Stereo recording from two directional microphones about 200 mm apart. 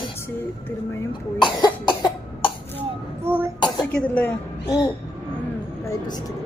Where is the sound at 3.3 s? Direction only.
10° right (ahead or behind).